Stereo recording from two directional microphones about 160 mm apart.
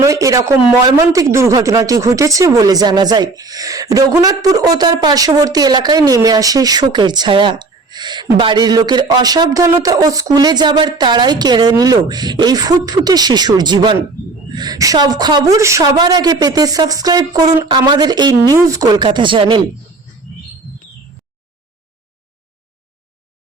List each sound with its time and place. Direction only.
0.0 s speech: 20° right (ahead or behind)